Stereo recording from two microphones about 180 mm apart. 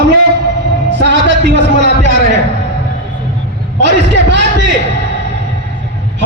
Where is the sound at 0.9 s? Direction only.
75° right (ahead or behind).